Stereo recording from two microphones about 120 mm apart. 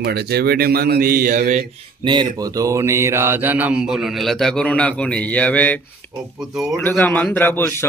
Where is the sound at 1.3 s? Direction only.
90° right.